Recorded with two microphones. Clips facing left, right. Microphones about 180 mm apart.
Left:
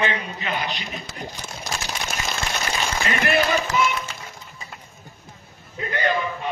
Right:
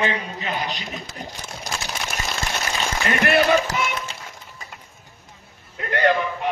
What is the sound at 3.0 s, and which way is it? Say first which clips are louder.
Speech: right 3 dB; 60° right (ahead or behind).